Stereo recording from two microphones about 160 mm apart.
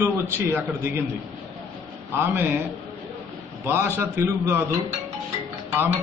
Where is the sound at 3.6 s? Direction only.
15° right (ahead or behind).